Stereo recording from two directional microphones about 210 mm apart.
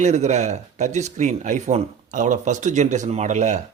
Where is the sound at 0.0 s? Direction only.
35° right (ahead or behind).